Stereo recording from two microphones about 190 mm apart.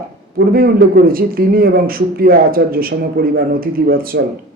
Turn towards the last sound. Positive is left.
turn(degrees=-50)  # may be behind; listen again after turning